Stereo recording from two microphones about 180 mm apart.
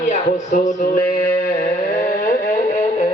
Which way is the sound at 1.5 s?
50° left (ahead or behind).